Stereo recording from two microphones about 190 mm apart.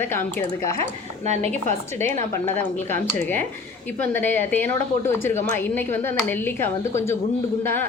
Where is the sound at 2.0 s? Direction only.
10° left (ahead or behind).